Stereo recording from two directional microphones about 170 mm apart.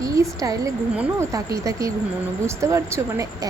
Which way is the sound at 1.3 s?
20° right (ahead or behind).